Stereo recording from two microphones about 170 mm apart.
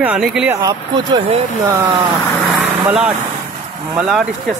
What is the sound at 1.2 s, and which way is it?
Speech, 35° right (ahead or behind).